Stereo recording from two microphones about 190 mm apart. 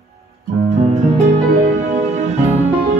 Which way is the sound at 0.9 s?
35° right (ahead or behind).